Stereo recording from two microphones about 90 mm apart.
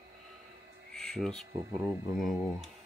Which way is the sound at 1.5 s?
30° right (ahead or behind).